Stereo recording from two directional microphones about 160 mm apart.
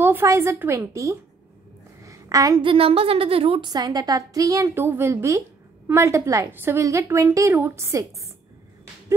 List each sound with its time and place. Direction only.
0.0 s a woman's voice: 15° right (ahead or behind)